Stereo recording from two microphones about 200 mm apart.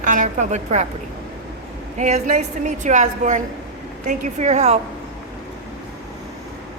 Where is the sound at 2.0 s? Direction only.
35° right (ahead or behind).